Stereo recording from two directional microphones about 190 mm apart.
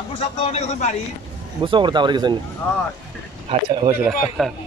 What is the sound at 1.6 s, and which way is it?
Speech, 25° right (ahead or behind).